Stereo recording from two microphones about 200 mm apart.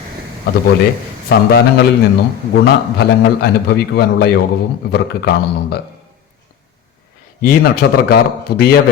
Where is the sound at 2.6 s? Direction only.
55° left (ahead or behind).